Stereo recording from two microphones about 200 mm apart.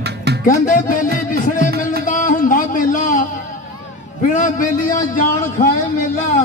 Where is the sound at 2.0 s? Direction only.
40° left (ahead or behind).